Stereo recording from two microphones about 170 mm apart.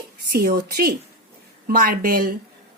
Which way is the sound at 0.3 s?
60° right (ahead or behind).